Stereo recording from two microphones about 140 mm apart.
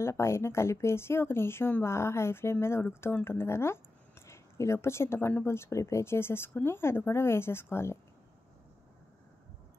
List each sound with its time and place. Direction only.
0.0 s speech: 20° left (ahead or behind)